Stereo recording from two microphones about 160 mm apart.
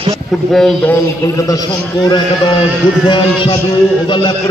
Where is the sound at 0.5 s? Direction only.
5° left (ahead or behind).